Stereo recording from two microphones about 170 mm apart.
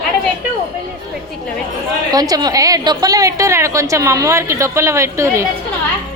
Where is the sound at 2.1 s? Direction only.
20° right (ahead or behind).